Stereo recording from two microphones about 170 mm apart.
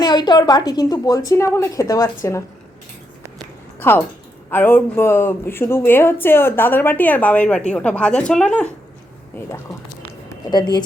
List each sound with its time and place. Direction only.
0.0 s a woman's voice: 25° left (ahead or behind)
3.8 s speech: 10° left (ahead or behind)
10.2 s a woman's voice: 25° left (ahead or behind)